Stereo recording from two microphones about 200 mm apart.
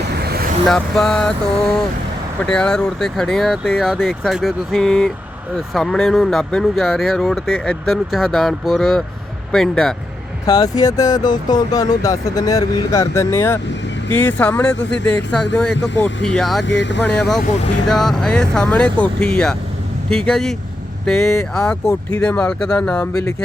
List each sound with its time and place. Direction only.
0.1 s vehicle: 55° right (ahead or behind)
0.7 s speech: centre (ahead or behind)
2.4 s speech: 5° left (ahead or behind)
10.4 s speech: 20° left (ahead or behind); by 16.6 s centre (ahead or behind)
16.6 s speech: 65° left (ahead or behind)
17.2 s speech: centre (ahead or behind)